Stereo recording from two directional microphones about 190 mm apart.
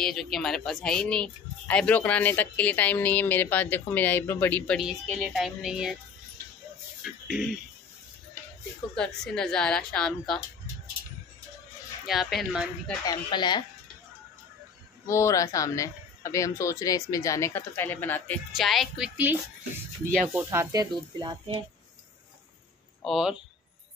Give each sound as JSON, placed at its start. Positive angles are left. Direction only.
{"t": 0.0, "sound": "speech", "side_deg": 0}
{"t": 7.0, "sound": "a sound", "side_deg": -5}
{"t": 8.9, "sound": "a woman's voice", "side_deg": 5}
{"t": 12.1, "sound": "a woman's voice", "side_deg": 0}
{"t": 13.0, "sound": "speech", "side_deg": 20}
{"t": 15.0, "sound": "speech", "side_deg": 15}
{"t": 20.3, "sound": "speech", "side_deg": -15}
{"t": 23.0, "sound": "a woman's voice", "side_deg": 0}